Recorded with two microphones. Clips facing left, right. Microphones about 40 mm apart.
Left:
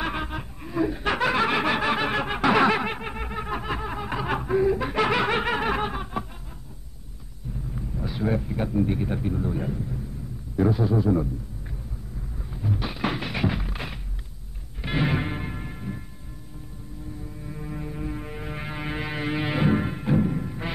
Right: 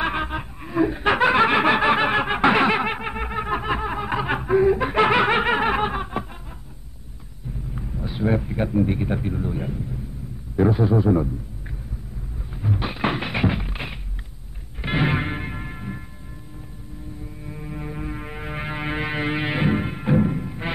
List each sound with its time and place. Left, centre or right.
0.0 s snicker: right
7.7 s speech: centre
10.5 s a man's voice: right
12.5 s a sound: right
14.8 s music: right
17.4 s music: centre